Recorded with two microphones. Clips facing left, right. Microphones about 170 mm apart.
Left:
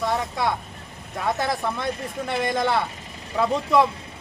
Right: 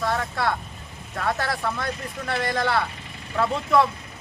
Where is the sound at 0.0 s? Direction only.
15° left (ahead or behind).